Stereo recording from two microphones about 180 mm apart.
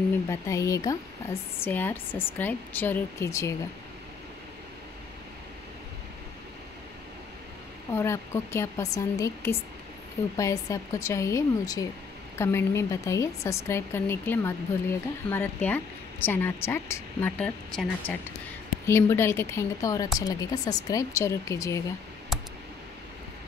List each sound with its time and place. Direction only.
0.3 s speech: 15° left (ahead or behind)
7.9 s speech: 15° left (ahead or behind)